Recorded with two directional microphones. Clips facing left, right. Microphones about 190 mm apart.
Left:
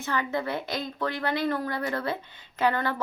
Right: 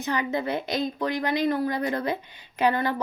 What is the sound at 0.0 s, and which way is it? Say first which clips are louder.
A woman's voice: right 2 dB; 15° right (ahead or behind).